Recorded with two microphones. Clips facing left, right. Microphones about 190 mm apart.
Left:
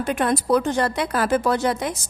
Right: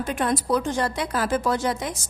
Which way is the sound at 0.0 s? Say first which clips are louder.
Left 3 dB; 60° left (ahead or behind).